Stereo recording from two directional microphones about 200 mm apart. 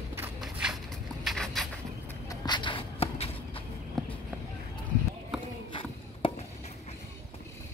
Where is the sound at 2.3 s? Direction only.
20° left (ahead or behind).